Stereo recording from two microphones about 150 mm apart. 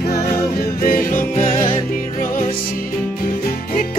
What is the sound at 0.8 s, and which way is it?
Music, 65° left (ahead or behind).